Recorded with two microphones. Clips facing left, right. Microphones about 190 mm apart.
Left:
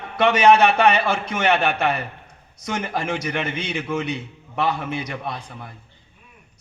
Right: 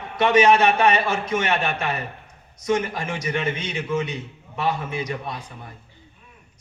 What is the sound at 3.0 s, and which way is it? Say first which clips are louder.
Speech: left 1 dB; 65° left (ahead or behind).